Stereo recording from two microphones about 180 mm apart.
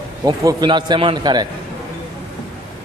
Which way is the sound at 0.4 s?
20° right (ahead or behind).